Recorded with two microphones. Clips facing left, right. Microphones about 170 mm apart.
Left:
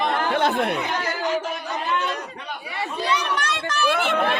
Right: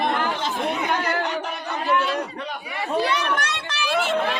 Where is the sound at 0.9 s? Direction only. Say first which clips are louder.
Even; 65° right (ahead or behind).